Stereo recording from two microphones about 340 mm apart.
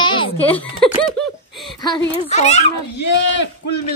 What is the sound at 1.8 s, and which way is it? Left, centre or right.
Speech, centre.